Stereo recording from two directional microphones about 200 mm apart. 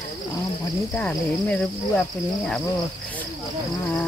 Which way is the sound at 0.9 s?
5° left (ahead or behind).